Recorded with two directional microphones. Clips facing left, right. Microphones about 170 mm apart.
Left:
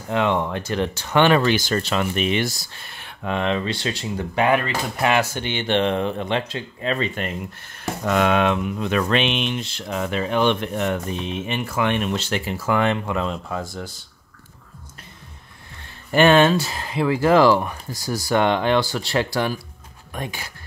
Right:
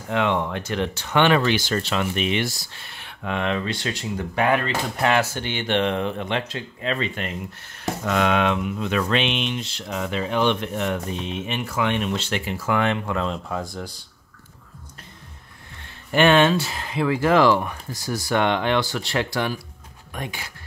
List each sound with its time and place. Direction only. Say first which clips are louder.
0.1 s speech: left 1 dB; 35° left (ahead or behind)
4.5 s speech: left 1 dB; 15° left (ahead or behind); by 13.0 s 35° left (ahead or behind)
13.0 s speech: left 1 dB; 10° left (ahead or behind)
16.1 s speech: left 2 dB; 40° left (ahead or behind)